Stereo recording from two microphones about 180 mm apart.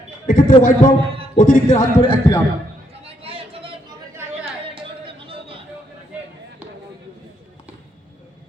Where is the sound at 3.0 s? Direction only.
35° right (ahead or behind).